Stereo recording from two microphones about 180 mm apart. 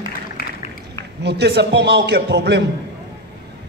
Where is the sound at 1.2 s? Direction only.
70° right (ahead or behind).